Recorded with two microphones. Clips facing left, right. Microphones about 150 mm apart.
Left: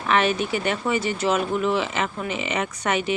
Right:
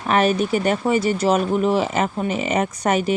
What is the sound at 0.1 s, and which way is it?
Speech, 40° right (ahead or behind).